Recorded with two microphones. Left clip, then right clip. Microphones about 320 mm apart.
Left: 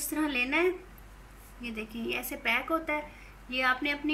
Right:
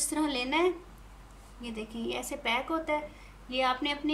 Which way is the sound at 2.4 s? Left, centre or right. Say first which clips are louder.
Left 2 dB; centre.